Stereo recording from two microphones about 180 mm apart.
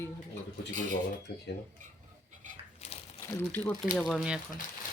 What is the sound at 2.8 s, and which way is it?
Crumpling, 35° left (ahead or behind).